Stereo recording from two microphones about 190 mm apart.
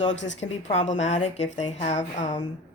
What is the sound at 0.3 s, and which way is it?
A woman's voice, 35° left (ahead or behind).